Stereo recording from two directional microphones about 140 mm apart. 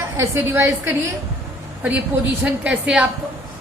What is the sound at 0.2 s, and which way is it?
Speech, 15° right (ahead or behind).